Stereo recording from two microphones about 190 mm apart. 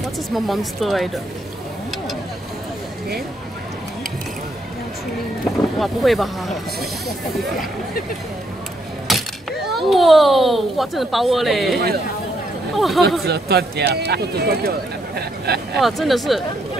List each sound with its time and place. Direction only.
0.3 s speech: centre (ahead or behind)
5.8 s speech: centre (ahead or behind)
9.0 s a child's voice: centre (ahead or behind)
13.2 s speech: 55° right (ahead or behind)
15.8 s speech: centre (ahead or behind)